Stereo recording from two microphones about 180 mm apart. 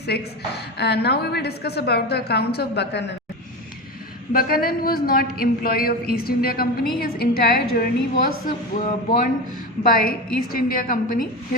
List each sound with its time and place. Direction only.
0.0 s a woman's voice: 65° left (ahead or behind)
4.3 s a woman's voice: 55° left (ahead or behind)